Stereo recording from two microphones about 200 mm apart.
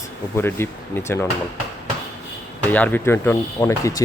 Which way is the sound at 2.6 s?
10° left (ahead or behind).